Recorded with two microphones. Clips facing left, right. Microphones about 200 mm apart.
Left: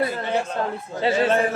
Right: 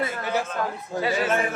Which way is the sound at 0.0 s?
30° left (ahead or behind).